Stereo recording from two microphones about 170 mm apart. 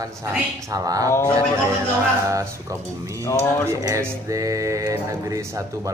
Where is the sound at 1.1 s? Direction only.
15° left (ahead or behind).